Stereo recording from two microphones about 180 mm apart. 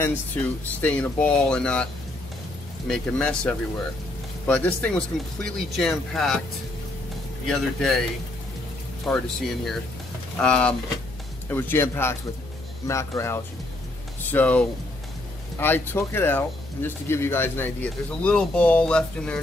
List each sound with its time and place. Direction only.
0.0 s speech: 10° left (ahead or behind)
2.9 s speech: 5° left (ahead or behind)
7.4 s speech: centre (ahead or behind)
9.0 s speech: centre (ahead or behind)
15.6 s speech: 10° left (ahead or behind)